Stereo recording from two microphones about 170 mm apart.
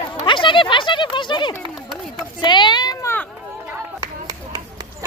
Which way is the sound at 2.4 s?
25° left (ahead or behind).